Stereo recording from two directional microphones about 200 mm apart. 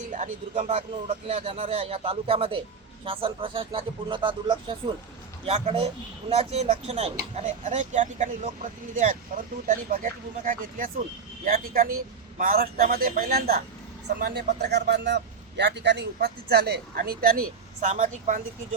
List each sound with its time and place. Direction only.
0.0 s a man's voice: 40° right (ahead or behind)